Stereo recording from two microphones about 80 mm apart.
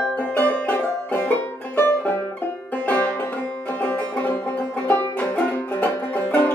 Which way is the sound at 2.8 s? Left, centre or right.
Centre.